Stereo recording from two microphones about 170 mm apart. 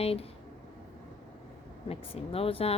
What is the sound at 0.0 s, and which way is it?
Speech, 35° left (ahead or behind).